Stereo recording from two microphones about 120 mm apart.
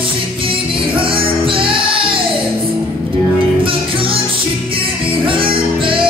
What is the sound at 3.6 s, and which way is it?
Music, 50° right (ahead or behind).